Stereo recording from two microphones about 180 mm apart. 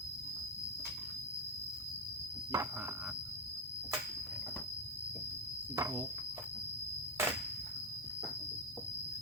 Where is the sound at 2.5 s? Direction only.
20° right (ahead or behind).